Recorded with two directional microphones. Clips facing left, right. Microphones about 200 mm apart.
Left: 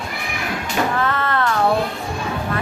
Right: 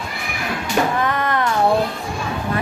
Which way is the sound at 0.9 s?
15° right (ahead or behind).